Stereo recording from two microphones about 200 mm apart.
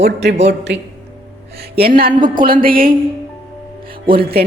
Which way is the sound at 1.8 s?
45° right (ahead or behind).